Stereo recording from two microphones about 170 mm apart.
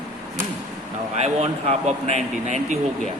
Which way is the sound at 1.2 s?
40° right (ahead or behind).